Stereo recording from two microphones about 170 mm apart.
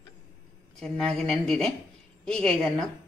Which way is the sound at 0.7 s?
5° left (ahead or behind).